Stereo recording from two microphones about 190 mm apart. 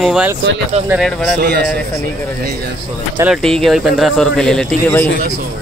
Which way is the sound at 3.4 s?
Centre (ahead or behind).